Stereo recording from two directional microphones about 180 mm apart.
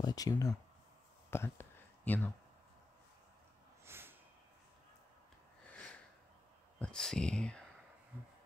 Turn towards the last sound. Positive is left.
turn(degrees=5)  # may be behind; listen again after turning